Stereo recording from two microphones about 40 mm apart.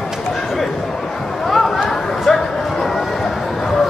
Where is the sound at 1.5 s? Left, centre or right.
Centre.